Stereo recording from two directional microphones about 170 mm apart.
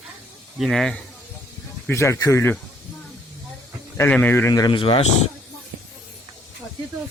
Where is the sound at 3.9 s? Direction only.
10° left (ahead or behind); by 5.3 s 35° left (ahead or behind).